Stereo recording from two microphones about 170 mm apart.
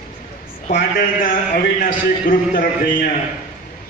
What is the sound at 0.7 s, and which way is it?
A man's voice, 55° left (ahead or behind).